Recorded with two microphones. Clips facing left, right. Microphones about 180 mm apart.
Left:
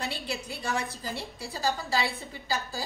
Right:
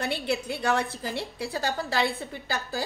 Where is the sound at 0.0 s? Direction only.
60° right (ahead or behind).